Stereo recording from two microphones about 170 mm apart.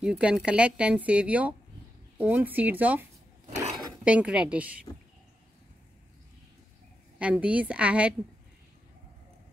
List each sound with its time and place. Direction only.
0.0 s speech: 5° right (ahead or behind)
7.2 s speech: 5° right (ahead or behind)